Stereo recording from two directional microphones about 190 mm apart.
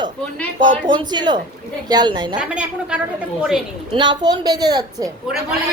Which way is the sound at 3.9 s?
25° right (ahead or behind).